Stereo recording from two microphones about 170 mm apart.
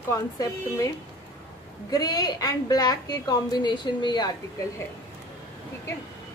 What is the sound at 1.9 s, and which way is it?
A woman's voice, 20° left (ahead or behind).